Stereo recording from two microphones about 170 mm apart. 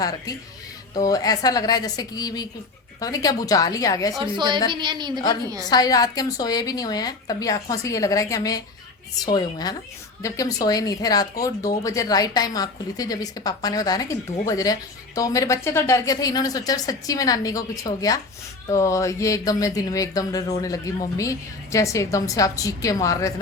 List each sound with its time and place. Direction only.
0.0 s a woman's voice: 20° left (ahead or behind)
4.2 s a woman's voice: 25° right (ahead or behind)
5.6 s a woman's voice: 25° left (ahead or behind)